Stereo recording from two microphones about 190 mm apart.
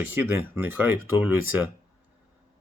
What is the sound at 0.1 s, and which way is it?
Speech, 10° right (ahead or behind).